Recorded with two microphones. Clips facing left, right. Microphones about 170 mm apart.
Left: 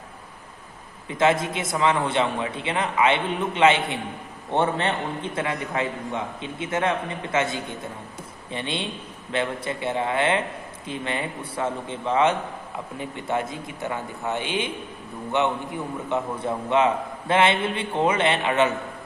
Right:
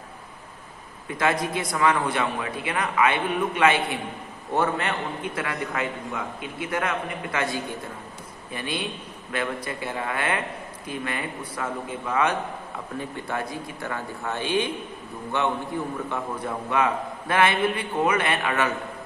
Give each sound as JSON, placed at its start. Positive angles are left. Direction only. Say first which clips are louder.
{"t": 1.0, "sound": "a man's voice", "louder": "left 3 dB", "side_deg": 25}